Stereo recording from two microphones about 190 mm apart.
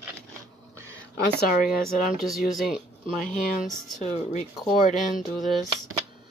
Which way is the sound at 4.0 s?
35° left (ahead or behind).